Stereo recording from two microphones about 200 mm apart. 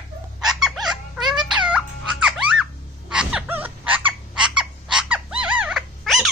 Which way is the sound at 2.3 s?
5° right (ahead or behind).